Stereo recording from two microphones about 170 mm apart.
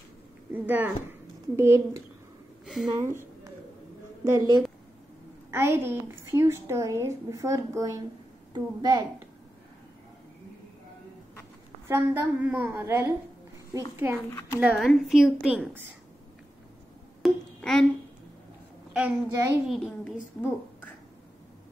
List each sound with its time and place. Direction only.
0.5 s a woman's voice: 10° right (ahead or behind)
2.6 s a sound: centre (ahead or behind)
2.9 s a woman's voice: 15° right (ahead or behind)
11.9 s a woman's voice: 15° right (ahead or behind)
14.6 s a woman's voice: centre (ahead or behind)
17.2 s a sound: centre (ahead or behind)
18.9 s a woman's voice: 10° right (ahead or behind)